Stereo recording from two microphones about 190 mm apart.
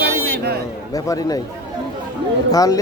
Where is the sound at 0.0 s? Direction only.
55° right (ahead or behind).